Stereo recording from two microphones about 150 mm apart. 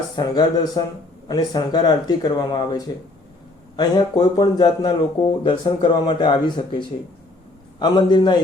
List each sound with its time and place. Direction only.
0.2 s speech: 25° left (ahead or behind)